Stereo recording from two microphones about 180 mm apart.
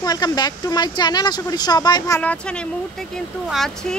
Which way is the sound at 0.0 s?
20° left (ahead or behind).